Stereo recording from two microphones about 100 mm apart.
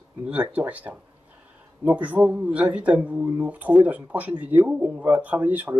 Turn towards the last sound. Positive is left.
turn(degrees=-15)  # may be behind; listen again after turning